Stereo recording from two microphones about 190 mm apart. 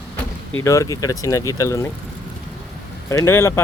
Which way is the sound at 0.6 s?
15° left (ahead or behind).